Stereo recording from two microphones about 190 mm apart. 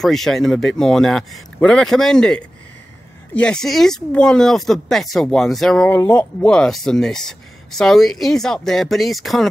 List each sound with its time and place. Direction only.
0.0 s speech: centre (ahead or behind)